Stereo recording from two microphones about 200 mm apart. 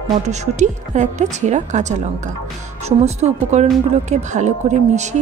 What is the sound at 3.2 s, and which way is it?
A woman's voice, 35° right (ahead or behind).